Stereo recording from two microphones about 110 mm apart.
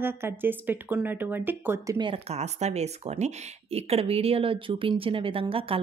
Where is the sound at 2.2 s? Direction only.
90° right.